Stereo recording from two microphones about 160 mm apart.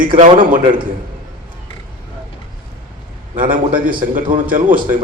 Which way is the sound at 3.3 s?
60° right (ahead or behind).